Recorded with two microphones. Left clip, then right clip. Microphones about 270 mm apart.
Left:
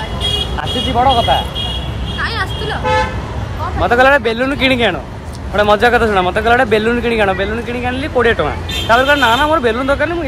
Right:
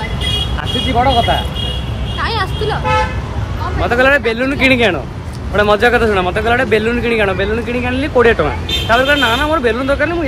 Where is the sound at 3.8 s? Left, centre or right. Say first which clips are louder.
Left 2 dB; centre.